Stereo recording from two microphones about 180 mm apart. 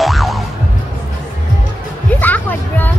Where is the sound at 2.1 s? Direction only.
10° left (ahead or behind).